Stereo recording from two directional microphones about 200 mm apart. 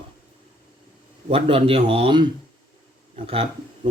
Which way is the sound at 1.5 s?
25° right (ahead or behind).